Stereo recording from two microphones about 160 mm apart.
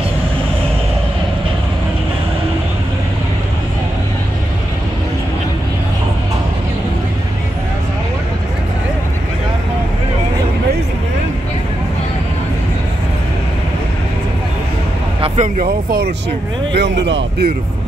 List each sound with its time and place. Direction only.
15.1 s vehicle: 35° right (ahead or behind)
15.4 s speech: 55° right (ahead or behind)
16.7 s speech: 90° right